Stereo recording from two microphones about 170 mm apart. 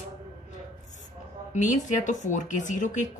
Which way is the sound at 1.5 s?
45° left (ahead or behind).